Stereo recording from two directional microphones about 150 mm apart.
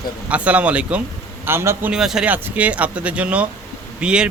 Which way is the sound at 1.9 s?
5° right (ahead or behind).